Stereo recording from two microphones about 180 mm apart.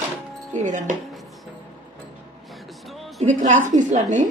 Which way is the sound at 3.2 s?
40° right (ahead or behind).